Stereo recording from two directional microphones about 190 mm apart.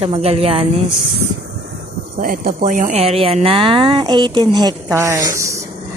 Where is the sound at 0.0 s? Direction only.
30° right (ahead or behind).